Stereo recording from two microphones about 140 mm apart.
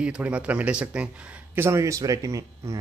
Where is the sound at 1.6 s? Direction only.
20° right (ahead or behind).